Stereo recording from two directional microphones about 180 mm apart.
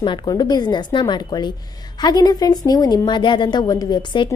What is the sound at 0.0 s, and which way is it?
A woman's voice, 25° left (ahead or behind).